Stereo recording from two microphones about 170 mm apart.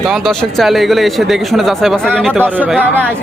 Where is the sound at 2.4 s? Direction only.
10° right (ahead or behind).